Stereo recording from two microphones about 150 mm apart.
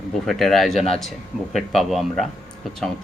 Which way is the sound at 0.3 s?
Centre (ahead or behind).